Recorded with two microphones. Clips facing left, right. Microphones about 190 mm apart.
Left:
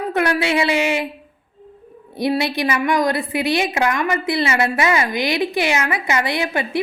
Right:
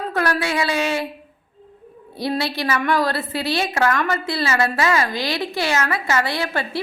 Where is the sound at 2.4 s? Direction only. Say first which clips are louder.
Left 2 dB; 15° left (ahead or behind).